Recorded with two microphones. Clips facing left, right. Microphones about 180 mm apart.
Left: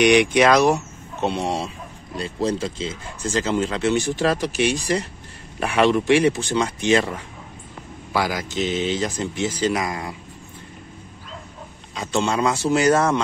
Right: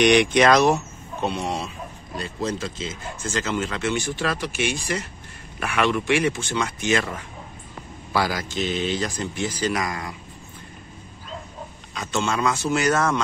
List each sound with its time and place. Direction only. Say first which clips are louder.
0.0 s speech: left 1 dB; 10° left (ahead or behind)
1.2 s speech: left 3 dB; 30° left (ahead or behind)
8.1 s speech: left 1 dB; 15° left (ahead or behind)
11.9 s speech: left 3 dB; 30° left (ahead or behind)